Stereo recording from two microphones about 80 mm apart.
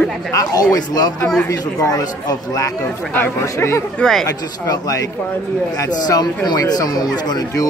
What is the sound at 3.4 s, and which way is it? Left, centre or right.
Speech, left.